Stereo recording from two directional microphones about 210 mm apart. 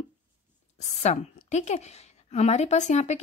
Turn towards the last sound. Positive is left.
turn(degrees=35)  # may be behind; listen again after turning